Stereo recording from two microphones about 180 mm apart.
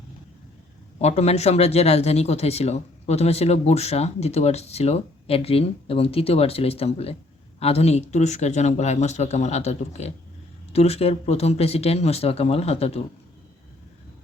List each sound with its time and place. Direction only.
1.0 s speech: 35° left (ahead or behind)